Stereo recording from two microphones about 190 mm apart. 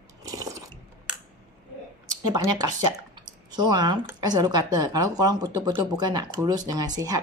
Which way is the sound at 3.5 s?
20° right (ahead or behind).